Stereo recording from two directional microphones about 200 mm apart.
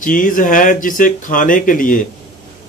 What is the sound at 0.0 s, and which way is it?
Speech, 40° left (ahead or behind).